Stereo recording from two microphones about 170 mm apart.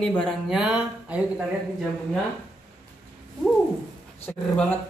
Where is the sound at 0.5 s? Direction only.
5° right (ahead or behind).